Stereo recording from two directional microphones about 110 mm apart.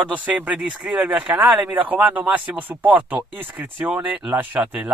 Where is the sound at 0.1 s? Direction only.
15° right (ahead or behind).